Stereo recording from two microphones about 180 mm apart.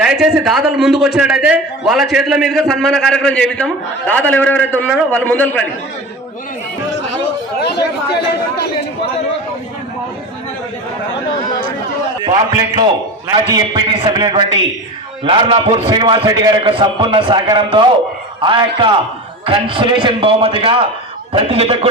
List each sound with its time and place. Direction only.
0.0 s a man's voice: 5° right (ahead or behind)
7.6 s chatter: 65° left (ahead or behind)
12.2 s a man's voice: 25° right (ahead or behind)